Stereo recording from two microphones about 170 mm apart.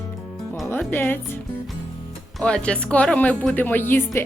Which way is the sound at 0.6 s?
10° left (ahead or behind).